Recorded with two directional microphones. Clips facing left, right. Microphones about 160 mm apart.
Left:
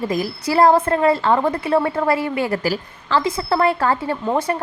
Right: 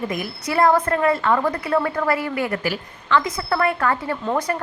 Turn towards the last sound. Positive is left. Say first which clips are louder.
# left 2 dB
turn(degrees=25)  # may be behind; listen again after turning